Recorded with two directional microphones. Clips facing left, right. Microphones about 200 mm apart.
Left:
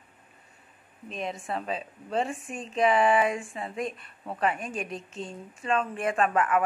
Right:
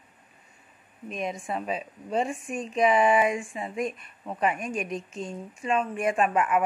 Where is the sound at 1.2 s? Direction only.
Centre (ahead or behind).